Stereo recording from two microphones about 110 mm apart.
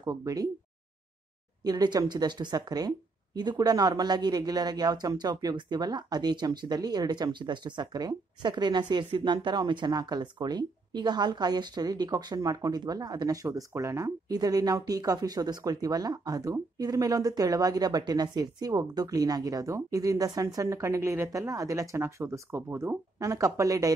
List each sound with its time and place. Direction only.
0.0 s speech: 35° right (ahead or behind)
1.6 s speech: 40° right (ahead or behind)